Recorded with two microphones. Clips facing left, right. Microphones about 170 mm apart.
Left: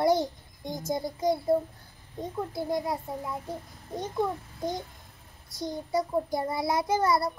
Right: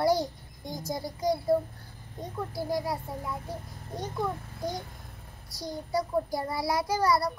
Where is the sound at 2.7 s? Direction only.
20° left (ahead or behind).